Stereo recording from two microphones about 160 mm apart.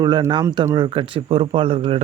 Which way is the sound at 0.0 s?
25° right (ahead or behind).